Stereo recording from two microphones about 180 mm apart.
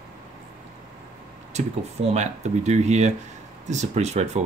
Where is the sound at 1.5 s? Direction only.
40° right (ahead or behind).